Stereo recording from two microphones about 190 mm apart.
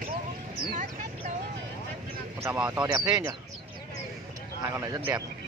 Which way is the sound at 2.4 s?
10° right (ahead or behind).